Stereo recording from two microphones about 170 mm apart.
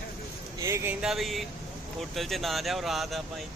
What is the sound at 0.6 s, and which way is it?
Speech, 15° right (ahead or behind).